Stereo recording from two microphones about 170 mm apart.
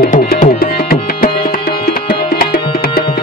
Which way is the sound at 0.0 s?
50° left (ahead or behind).